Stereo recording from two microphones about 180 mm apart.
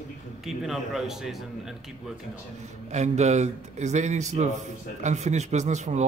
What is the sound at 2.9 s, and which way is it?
Speech, 40° right (ahead or behind).